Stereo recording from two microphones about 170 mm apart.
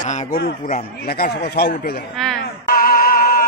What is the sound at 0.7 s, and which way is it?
Speech, 45° left (ahead or behind).